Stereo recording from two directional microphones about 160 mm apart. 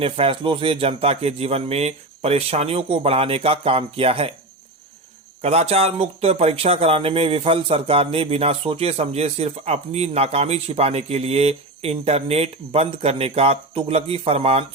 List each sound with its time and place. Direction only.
0.0 s speech: 35° right (ahead or behind)
5.4 s speech: 40° right (ahead or behind)